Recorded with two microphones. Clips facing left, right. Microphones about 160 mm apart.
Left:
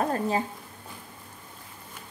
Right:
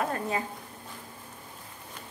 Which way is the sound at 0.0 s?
35° left (ahead or behind).